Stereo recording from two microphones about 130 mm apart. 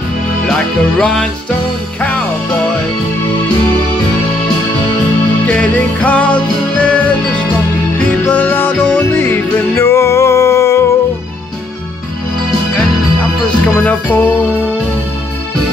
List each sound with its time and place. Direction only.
0.5 s music: 5° left (ahead or behind)
5.5 s music: 10° left (ahead or behind)
13.8 s music: 10° left (ahead or behind)